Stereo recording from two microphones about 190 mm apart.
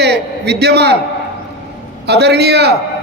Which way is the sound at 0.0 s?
60° right (ahead or behind).